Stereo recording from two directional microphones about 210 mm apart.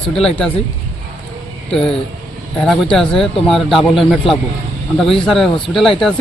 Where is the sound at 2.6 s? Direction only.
5° left (ahead or behind).